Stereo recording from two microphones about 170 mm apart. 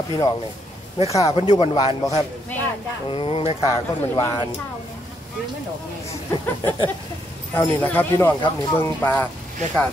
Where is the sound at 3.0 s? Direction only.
30° left (ahead or behind).